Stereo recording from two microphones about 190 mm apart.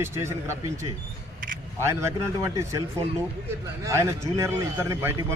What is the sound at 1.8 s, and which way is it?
Speech, 15° right (ahead or behind).